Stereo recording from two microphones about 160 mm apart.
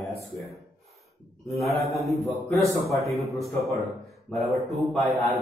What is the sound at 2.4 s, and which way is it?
Speech, 20° left (ahead or behind).